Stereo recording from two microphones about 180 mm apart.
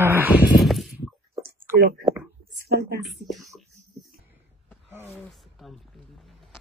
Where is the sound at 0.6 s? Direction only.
Centre (ahead or behind).